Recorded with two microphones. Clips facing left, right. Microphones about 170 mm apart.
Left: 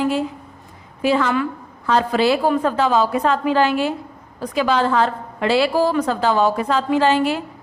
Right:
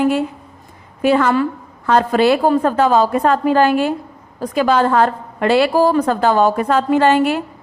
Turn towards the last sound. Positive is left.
turn(degrees=-55)  # may be behind; listen again after turning